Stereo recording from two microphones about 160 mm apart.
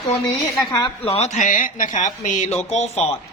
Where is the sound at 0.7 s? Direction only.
30° left (ahead or behind).